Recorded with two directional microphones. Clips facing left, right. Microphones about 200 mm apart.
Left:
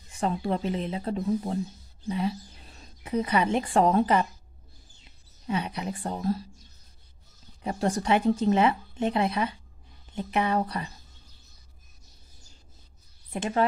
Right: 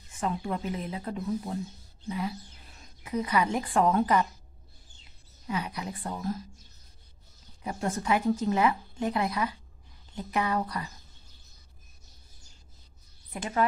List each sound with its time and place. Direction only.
0.2 s speech: 30° left (ahead or behind)
5.5 s speech: 25° left (ahead or behind)
7.6 s speech: 35° left (ahead or behind)
13.3 s speech: 25° left (ahead or behind)